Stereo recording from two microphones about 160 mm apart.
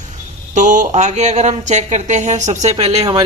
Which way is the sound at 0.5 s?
50° right (ahead or behind).